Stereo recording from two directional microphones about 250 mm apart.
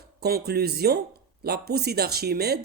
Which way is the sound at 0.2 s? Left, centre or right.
Right.